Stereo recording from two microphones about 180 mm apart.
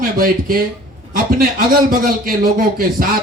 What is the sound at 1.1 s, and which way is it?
A man's voice, 55° right (ahead or behind).